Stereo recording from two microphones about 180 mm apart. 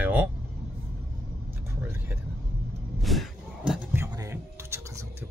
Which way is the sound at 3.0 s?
Centre (ahead or behind).